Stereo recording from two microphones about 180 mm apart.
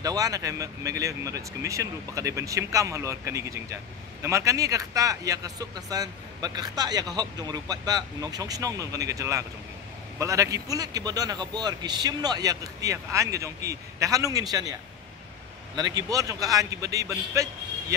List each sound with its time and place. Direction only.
0.0 s speech: 20° right (ahead or behind)